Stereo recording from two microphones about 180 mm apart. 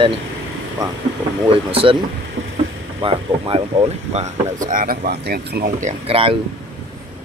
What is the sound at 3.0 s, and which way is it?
Speech, 30° right (ahead or behind).